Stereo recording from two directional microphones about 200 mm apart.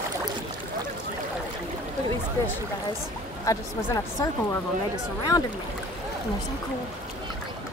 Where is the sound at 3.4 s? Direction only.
15° left (ahead or behind).